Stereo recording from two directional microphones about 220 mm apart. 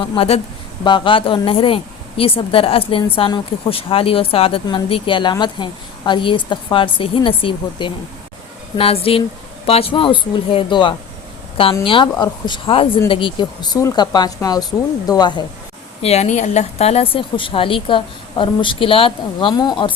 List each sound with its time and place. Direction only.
0.0 s a woman's voice: 25° left (ahead or behind)